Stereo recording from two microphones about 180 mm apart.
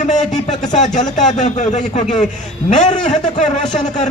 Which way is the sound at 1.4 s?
40° left (ahead or behind).